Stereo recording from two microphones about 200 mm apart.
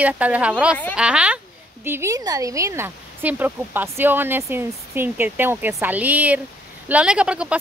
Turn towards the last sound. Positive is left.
turn(degrees=-5)  # may be behind; listen again after turning